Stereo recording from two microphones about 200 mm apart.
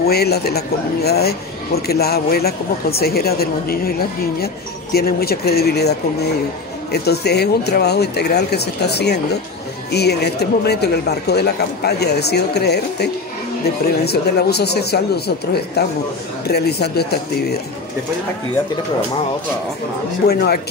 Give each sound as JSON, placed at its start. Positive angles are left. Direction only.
{"t": 0.0, "sound": "a woman's voice", "side_deg": 50}
{"t": 4.9, "sound": "a woman's voice", "side_deg": 50}
{"t": 20.2, "sound": "a woman's voice", "side_deg": 50}